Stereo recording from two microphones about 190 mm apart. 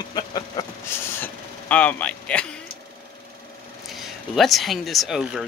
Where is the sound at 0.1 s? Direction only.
20° left (ahead or behind).